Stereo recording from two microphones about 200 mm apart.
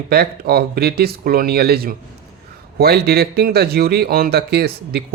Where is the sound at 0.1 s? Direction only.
50° right (ahead or behind).